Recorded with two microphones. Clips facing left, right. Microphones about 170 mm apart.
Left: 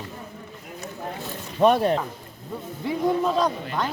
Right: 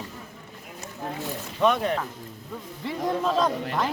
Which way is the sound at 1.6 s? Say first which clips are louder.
Left 4 dB; 35° left (ahead or behind).